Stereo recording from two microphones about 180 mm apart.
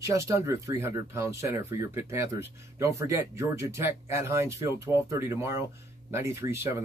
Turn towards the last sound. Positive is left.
turn(degrees=-15)  # may be behind; listen again after turning